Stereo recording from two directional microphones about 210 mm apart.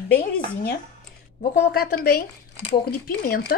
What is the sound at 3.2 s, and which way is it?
Speech, 45° left (ahead or behind).